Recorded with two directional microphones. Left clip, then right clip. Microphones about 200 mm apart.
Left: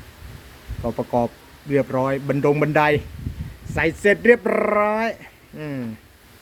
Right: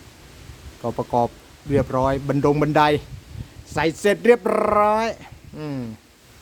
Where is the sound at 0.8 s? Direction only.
10° right (ahead or behind).